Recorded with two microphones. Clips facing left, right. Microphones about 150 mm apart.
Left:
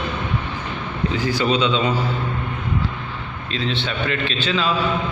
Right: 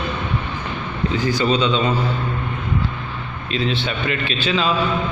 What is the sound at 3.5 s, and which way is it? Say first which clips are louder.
A man's voice: right 3 dB; 10° right (ahead or behind).